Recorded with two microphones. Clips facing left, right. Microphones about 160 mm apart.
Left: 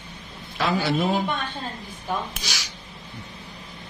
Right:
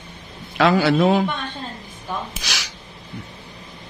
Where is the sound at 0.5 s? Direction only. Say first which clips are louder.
Right 7 dB; 80° right.